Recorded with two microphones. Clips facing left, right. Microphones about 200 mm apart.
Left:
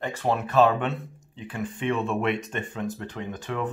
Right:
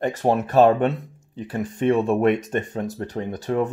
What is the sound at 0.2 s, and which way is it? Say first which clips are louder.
Speech: right 4 dB; 45° right (ahead or behind).